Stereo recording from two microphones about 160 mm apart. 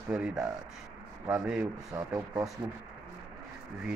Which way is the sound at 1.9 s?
25° right (ahead or behind).